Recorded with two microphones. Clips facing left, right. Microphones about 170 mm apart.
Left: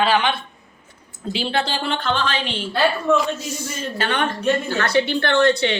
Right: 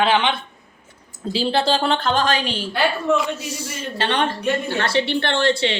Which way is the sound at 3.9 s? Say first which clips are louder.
Right 2 dB; 30° right (ahead or behind).